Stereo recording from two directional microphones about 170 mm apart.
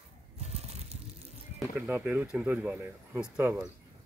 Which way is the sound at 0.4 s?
40° right (ahead or behind).